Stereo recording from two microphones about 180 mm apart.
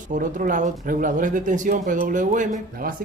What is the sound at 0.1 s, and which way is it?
Speech, 45° right (ahead or behind).